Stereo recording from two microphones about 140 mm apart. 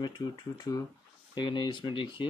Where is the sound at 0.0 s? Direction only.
30° left (ahead or behind).